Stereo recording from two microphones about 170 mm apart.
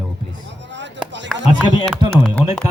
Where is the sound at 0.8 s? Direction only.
90° right.